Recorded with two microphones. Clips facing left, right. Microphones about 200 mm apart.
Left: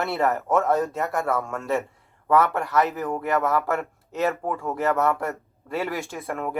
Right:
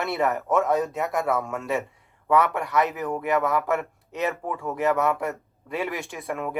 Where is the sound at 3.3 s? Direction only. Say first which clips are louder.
Even; 15° right (ahead or behind).